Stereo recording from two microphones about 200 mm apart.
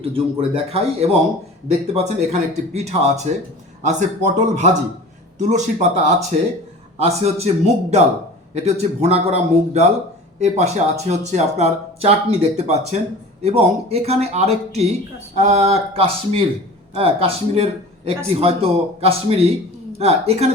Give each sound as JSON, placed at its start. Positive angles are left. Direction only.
{"t": 0.1, "sound": "speech", "side_deg": -30}